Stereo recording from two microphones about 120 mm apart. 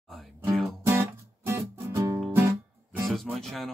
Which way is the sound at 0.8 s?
20° right (ahead or behind).